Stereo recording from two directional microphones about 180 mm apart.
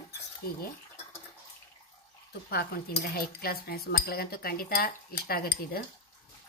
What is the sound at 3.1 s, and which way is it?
Speech, 55° left (ahead or behind).